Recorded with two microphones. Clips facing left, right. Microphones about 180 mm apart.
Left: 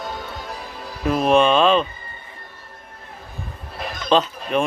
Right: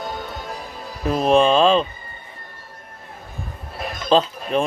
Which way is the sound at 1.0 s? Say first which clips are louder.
Even; 35° right (ahead or behind).